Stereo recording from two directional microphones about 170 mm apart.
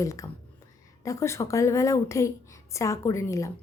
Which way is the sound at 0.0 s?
20° left (ahead or behind).